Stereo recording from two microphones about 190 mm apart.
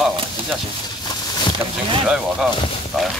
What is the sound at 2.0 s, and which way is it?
Speech, centre (ahead or behind).